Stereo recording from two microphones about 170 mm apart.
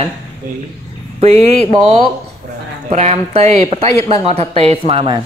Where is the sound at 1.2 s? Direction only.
40° right (ahead or behind).